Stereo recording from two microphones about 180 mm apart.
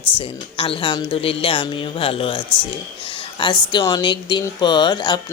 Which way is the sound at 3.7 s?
25° left (ahead or behind).